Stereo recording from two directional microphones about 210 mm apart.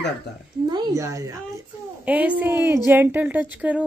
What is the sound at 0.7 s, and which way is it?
Speech, 15° right (ahead or behind).